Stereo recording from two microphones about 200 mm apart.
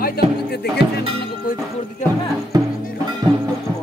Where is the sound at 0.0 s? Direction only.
50° left (ahead or behind).